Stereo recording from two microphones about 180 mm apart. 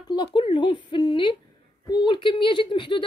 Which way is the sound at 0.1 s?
25° left (ahead or behind).